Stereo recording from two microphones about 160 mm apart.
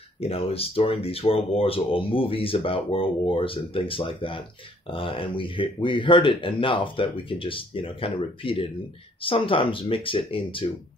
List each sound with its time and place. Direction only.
0.2 s speech: 40° left (ahead or behind)